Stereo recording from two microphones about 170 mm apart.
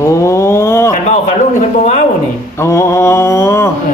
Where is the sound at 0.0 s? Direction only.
15° left (ahead or behind).